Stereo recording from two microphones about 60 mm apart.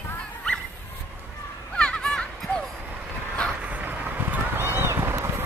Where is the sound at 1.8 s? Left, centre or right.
Centre.